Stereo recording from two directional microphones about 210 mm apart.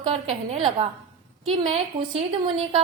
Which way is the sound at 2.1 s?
30° right (ahead or behind).